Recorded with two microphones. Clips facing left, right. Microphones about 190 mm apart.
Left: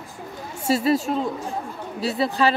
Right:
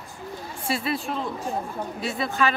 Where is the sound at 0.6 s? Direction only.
40° left (ahead or behind).